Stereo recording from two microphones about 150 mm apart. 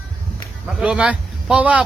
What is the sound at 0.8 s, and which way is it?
A man's voice, 5° right (ahead or behind).